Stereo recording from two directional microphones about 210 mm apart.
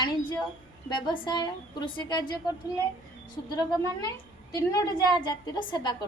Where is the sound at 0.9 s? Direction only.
20° left (ahead or behind).